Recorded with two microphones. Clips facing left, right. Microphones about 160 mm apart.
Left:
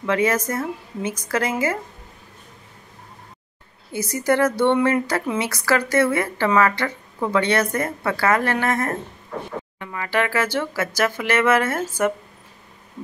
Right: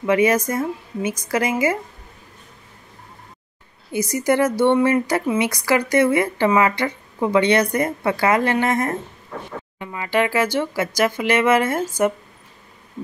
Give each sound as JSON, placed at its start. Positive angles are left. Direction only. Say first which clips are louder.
{"t": 0.0, "sound": "a woman's voice", "louder": "right 3 dB", "side_deg": -15}
{"t": 3.9, "sound": "a woman's voice", "louder": "right 2 dB", "side_deg": -15}